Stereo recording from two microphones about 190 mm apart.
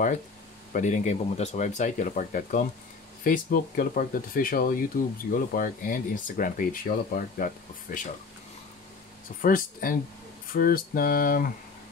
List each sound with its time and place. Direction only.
0.7 s speech: 40° left (ahead or behind)
9.4 s speech: 45° left (ahead or behind)